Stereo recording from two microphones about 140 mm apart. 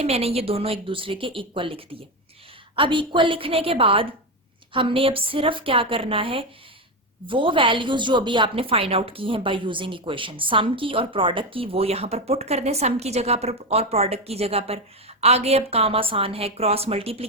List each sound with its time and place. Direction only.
0.0 s a woman's voice: 45° right (ahead or behind)